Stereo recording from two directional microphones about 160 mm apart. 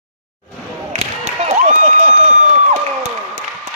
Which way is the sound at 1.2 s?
45° right (ahead or behind).